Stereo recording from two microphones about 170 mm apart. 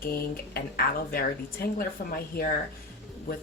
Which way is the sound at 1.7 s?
60° left (ahead or behind).